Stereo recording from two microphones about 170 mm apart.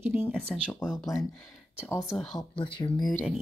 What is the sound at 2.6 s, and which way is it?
Speech, 30° left (ahead or behind).